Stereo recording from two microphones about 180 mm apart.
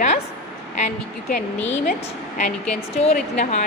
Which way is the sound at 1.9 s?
45° left (ahead or behind).